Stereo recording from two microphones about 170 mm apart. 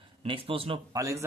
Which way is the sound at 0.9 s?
20° right (ahead or behind).